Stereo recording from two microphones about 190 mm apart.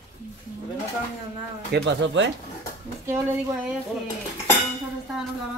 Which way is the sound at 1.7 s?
70° right (ahead or behind).